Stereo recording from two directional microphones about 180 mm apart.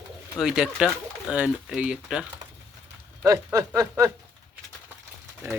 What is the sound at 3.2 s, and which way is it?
Speech, 20° right (ahead or behind).